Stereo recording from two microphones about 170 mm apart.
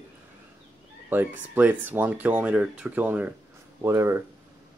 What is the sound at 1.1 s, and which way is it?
Speech, 10° right (ahead or behind).